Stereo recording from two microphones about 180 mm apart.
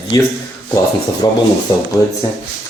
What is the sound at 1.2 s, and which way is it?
Speech, 20° left (ahead or behind).